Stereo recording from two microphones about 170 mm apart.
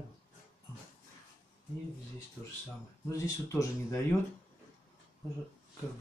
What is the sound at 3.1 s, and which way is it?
Speech, 20° left (ahead or behind).